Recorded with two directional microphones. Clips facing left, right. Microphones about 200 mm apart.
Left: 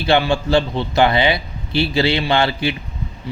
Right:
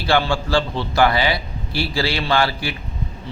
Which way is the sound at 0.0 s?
20° left (ahead or behind).